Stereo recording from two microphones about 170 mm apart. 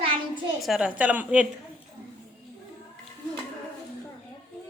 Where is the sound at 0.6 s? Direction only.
5° right (ahead or behind).